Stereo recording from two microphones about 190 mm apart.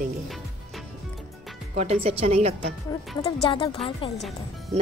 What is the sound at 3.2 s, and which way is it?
Speech, 25° left (ahead or behind).